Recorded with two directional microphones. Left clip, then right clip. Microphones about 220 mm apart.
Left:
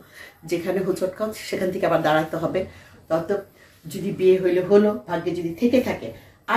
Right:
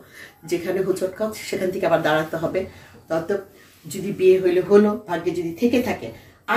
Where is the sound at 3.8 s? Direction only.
10° left (ahead or behind).